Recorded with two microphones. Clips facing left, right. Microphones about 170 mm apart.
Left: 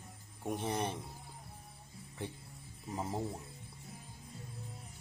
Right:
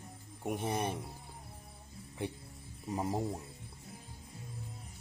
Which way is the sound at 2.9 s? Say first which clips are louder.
Right 3 dB; 15° right (ahead or behind).